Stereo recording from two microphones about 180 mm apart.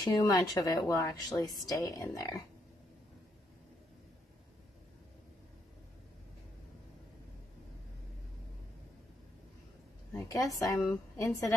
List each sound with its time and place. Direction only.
0.0 s speech: 20° left (ahead or behind)
10.1 s speech: 20° left (ahead or behind)